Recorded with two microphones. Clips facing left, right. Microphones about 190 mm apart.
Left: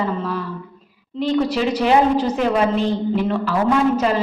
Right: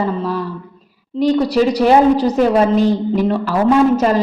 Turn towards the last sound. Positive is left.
turn(degrees=-40)  # may be behind; listen again after turning